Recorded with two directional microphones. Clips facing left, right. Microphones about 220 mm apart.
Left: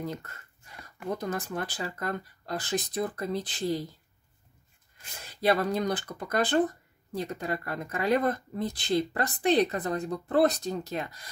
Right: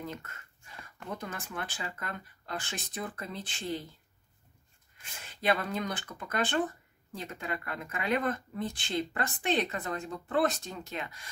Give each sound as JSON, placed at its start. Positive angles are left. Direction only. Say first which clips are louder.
{"t": 0.0, "sound": "speech", "louder": "left 5 dB", "side_deg": 35}
{"t": 5.2, "sound": "speech", "louder": "left 5 dB", "side_deg": 40}